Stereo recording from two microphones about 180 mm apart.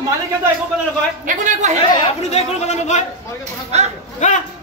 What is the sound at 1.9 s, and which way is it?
Speech, 30° left (ahead or behind).